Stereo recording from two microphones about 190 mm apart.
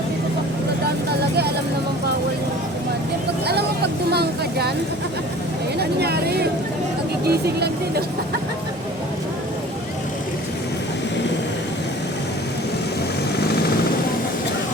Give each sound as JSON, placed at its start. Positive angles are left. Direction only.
{"t": 3.4, "sound": "vehicle", "side_deg": -60}
{"t": 6.0, "sound": "a sound", "side_deg": -55}
{"t": 7.3, "sound": "speech", "side_deg": -55}